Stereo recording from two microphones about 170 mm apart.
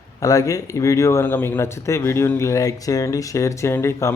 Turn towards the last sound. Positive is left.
turn(degrees=15)  # may be behind; listen again after turning